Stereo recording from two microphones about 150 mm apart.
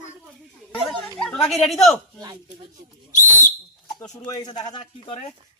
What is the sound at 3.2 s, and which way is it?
Whistle, 55° left (ahead or behind).